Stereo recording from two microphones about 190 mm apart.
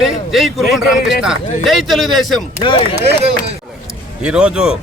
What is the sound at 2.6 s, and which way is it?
Speech, 30° left (ahead or behind).